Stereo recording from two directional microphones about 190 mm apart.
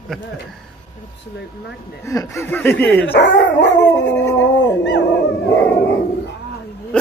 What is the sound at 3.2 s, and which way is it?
Speech, 65° left (ahead or behind).